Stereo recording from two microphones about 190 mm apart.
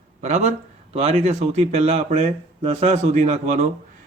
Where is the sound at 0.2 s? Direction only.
35° right (ahead or behind).